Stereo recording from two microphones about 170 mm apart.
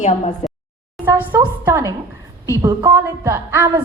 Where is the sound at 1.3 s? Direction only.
15° right (ahead or behind).